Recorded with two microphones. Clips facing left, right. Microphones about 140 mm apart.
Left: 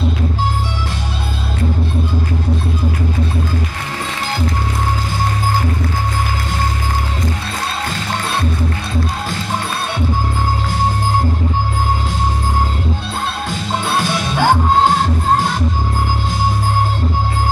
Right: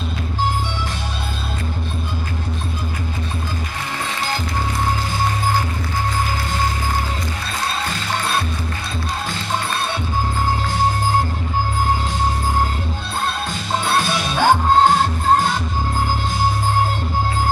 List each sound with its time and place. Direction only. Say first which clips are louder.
13.8 s music: left 1 dB; centre (ahead or behind)